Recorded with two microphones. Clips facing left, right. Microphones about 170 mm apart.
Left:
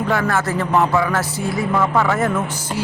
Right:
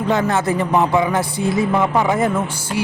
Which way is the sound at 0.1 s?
20° right (ahead or behind).